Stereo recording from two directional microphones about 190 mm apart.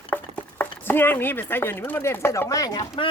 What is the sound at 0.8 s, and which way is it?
Speech, 10° left (ahead or behind).